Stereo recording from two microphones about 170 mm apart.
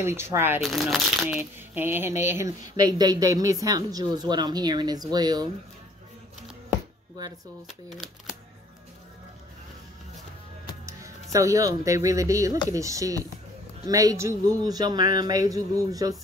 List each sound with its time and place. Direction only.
0.0 s speech: 15° right (ahead or behind)
0.6 s speech: centre (ahead or behind)
1.2 s speech: 10° right (ahead or behind)
7.6 s speech: centre (ahead or behind)
11.3 s speech: 20° right (ahead or behind)